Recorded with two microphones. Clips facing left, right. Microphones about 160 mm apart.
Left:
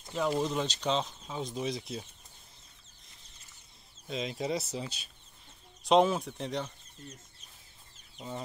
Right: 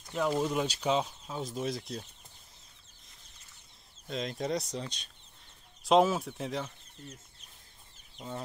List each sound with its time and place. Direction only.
0.1 s speech: centre (ahead or behind)
4.1 s speech: centre (ahead or behind)